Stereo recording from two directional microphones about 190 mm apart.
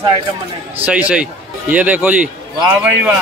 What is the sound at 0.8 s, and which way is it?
A man's voice, 5° right (ahead or behind).